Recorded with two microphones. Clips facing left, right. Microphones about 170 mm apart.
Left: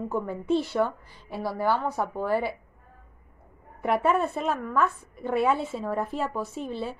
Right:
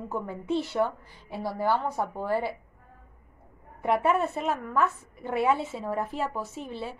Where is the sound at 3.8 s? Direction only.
20° right (ahead or behind).